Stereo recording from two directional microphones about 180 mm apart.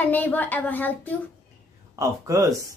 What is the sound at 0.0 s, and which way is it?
Speech, 10° left (ahead or behind).